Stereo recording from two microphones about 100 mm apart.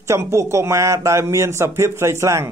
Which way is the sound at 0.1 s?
25° right (ahead or behind).